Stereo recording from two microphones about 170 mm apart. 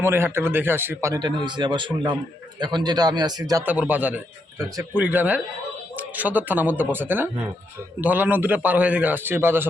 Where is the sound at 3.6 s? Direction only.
10° right (ahead or behind).